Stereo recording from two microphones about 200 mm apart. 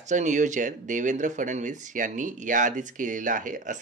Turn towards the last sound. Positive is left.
turn(degrees=-40)  # may be behind; listen again after turning